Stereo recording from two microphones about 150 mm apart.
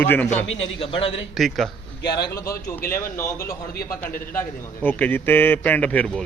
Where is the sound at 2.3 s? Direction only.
20° left (ahead or behind).